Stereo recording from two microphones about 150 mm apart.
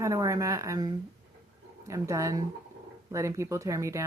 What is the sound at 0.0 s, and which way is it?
Speech, 20° right (ahead or behind).